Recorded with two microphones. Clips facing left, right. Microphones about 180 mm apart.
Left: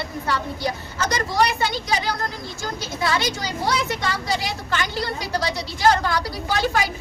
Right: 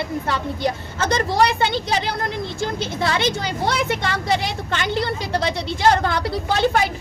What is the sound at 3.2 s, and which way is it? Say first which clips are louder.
Speech: right 3 dB; 60° right (ahead or behind).